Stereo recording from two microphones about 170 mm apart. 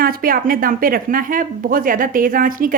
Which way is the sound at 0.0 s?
60° right (ahead or behind).